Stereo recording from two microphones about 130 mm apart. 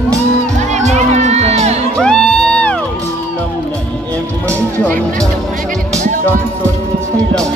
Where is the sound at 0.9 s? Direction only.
60° right (ahead or behind).